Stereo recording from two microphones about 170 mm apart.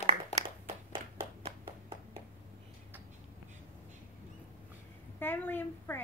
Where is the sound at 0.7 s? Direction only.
35° right (ahead or behind).